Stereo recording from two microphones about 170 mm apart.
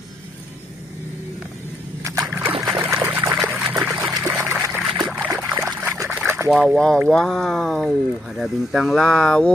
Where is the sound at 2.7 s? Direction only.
15° right (ahead or behind).